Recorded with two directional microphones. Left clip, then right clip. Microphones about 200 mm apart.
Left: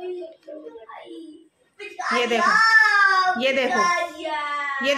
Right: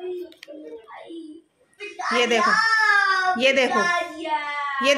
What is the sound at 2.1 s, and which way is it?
Speech, 15° right (ahead or behind).